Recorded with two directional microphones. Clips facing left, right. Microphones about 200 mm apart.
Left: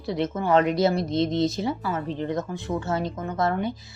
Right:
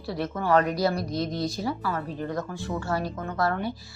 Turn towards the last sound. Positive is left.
turn(degrees=20)  # may be behind; listen again after turning